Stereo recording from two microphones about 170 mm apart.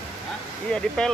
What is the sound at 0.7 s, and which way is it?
Speech, 5° left (ahead or behind).